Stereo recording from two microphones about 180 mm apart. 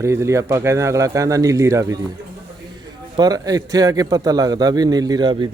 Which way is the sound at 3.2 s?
20° right (ahead or behind).